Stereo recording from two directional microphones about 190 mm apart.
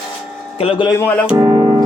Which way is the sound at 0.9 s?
10° left (ahead or behind).